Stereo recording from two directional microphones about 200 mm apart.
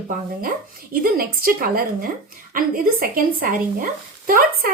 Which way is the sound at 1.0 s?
45° right (ahead or behind).